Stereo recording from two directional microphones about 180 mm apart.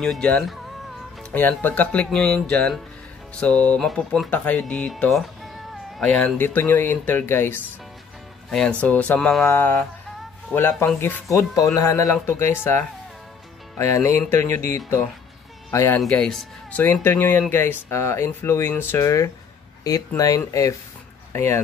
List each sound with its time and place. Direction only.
0.0 s speech: 5° left (ahead or behind)
15.7 s speech: 15° left (ahead or behind)
16.0 s speech: 5° left (ahead or behind); by 20.7 s 20° left (ahead or behind)